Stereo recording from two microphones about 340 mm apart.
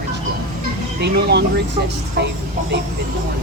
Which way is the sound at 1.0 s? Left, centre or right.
Right.